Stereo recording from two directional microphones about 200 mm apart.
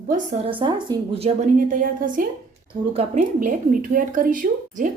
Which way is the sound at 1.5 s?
45° right (ahead or behind).